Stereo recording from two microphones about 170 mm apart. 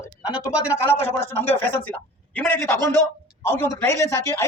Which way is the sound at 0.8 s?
15° left (ahead or behind).